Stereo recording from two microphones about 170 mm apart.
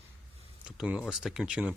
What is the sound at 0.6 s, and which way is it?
Speech, 5° right (ahead or behind).